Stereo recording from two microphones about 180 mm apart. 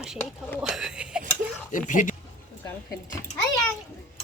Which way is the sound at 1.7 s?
45° left (ahead or behind).